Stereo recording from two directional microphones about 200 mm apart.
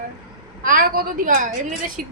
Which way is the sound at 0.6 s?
45° right (ahead or behind).